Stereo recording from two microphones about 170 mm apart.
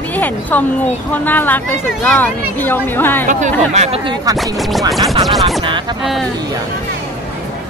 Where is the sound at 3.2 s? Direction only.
45° right (ahead or behind).